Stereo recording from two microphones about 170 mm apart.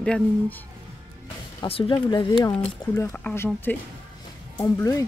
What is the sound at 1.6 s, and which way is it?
Speech, 35° left (ahead or behind).